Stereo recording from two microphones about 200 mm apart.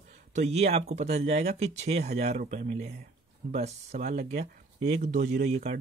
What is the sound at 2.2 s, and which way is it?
Speech, 35° right (ahead or behind).